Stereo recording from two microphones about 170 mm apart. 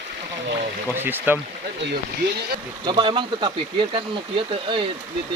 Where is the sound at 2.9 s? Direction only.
30° right (ahead or behind).